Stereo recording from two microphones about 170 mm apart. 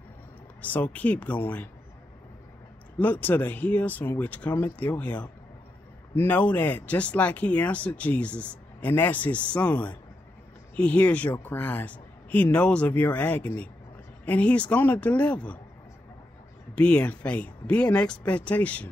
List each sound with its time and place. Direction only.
0.6 s speech: 10° left (ahead or behind)
3.0 s speech: 10° left (ahead or behind)
16.7 s speech: 5° left (ahead or behind)